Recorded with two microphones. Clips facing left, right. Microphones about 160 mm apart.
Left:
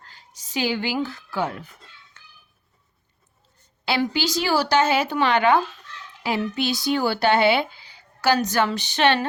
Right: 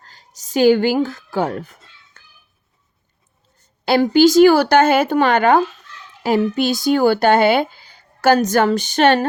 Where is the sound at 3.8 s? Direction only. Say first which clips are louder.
Right 11 dB; 45° right (ahead or behind).